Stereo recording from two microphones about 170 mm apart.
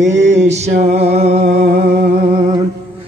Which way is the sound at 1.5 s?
70° right (ahead or behind).